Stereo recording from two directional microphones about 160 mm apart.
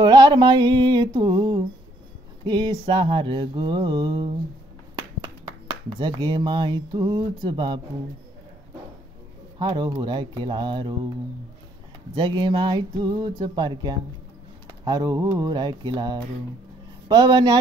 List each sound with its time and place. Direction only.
0.0 s mantra: 25° right (ahead or behind)
5.2 s speech: 25° right (ahead or behind)
9.6 s speech: 30° right (ahead or behind)
12.2 s speech: 30° right (ahead or behind)